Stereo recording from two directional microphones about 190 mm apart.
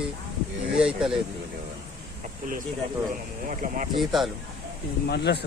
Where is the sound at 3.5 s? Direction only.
45° right (ahead or behind).